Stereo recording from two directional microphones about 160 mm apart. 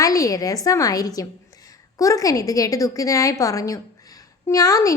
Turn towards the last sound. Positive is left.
turn(degrees=20)  # may be behind; listen again after turning